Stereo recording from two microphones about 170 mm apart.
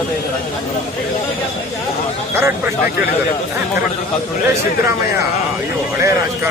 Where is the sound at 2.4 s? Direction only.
10° right (ahead or behind).